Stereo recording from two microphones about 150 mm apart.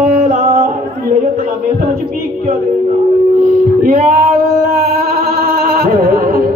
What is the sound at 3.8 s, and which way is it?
Female singing, 65° right (ahead or behind).